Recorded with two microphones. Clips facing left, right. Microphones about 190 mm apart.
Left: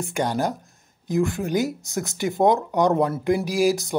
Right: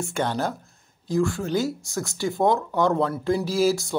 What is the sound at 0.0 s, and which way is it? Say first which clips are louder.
Speech: left 2 dB; 15° left (ahead or behind).